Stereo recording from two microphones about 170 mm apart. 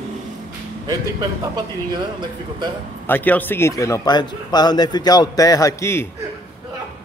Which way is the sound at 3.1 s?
10° left (ahead or behind).